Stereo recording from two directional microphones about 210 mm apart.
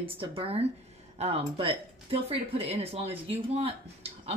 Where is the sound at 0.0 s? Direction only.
25° right (ahead or behind).